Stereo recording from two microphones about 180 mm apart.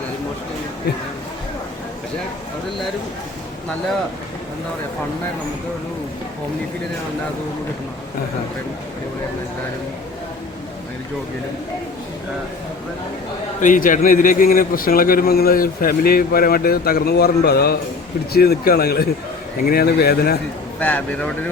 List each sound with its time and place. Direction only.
13.6 s a man's voice: 50° left (ahead or behind)
20.7 s speech: 10° left (ahead or behind)